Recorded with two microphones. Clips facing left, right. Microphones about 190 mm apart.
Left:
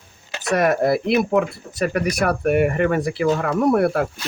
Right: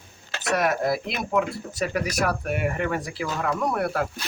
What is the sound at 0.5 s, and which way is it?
Speech, 60° left (ahead or behind).